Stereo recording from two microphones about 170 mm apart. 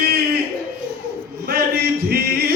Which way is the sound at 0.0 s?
70° right (ahead or behind).